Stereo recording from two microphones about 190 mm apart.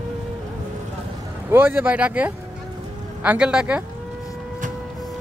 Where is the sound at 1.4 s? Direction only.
10° right (ahead or behind).